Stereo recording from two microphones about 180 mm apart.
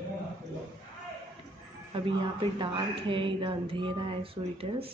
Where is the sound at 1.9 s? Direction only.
30° right (ahead or behind).